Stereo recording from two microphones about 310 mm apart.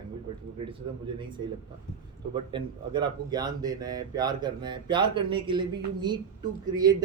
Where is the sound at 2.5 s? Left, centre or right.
Centre.